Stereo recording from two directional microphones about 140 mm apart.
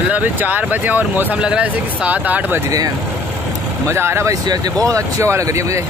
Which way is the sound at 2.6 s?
25° right (ahead or behind).